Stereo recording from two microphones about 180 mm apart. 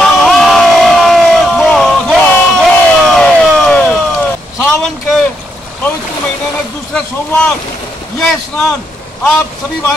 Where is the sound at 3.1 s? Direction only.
5° left (ahead or behind).